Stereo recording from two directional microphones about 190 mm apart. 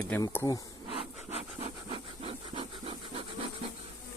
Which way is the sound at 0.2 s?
20° left (ahead or behind).